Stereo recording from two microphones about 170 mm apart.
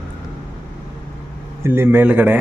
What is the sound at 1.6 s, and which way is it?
Speech, 15° right (ahead or behind).